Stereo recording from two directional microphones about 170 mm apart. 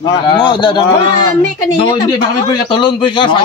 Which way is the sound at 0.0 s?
25° left (ahead or behind).